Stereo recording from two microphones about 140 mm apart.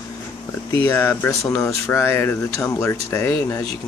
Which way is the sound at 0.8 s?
15° left (ahead or behind).